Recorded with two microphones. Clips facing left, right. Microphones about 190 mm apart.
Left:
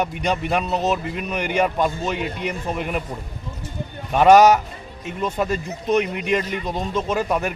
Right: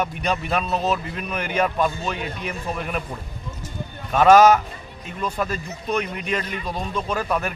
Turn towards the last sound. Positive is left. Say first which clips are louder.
# left 3 dB
turn(degrees=20)  # may be behind; listen again after turning